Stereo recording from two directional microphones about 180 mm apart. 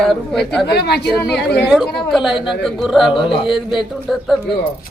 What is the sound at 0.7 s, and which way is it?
Speech, 65° left (ahead or behind).